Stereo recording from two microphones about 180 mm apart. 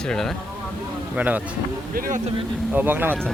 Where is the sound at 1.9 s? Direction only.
50° right (ahead or behind).